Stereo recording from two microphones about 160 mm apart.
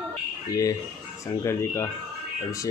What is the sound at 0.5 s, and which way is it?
Speech, 20° left (ahead or behind).